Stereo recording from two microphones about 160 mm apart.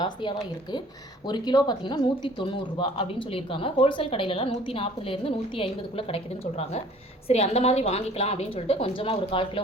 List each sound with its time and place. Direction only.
0.0 s speech: 30° left (ahead or behind)